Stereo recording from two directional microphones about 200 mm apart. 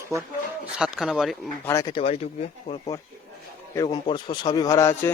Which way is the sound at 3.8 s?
25° left (ahead or behind).